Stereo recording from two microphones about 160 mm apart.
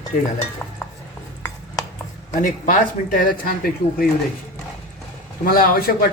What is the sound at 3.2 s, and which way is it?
Speech, 65° left (ahead or behind).